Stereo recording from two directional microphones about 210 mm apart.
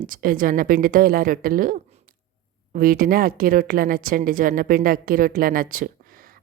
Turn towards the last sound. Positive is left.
turn(degrees=-40)  # may be behind; listen again after turning